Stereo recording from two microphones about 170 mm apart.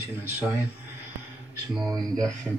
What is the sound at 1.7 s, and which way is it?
Speech, centre (ahead or behind).